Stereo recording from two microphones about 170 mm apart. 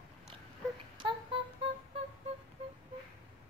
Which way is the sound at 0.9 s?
30° right (ahead or behind).